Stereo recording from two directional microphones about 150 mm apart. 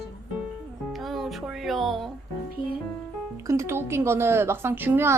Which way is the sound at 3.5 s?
20° right (ahead or behind).